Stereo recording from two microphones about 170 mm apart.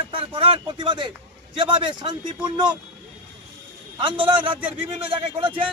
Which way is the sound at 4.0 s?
30° right (ahead or behind).